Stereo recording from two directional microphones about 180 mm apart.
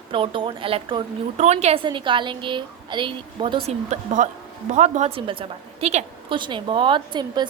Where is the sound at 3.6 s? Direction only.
40° right (ahead or behind); by 7.5 s 25° right (ahead or behind).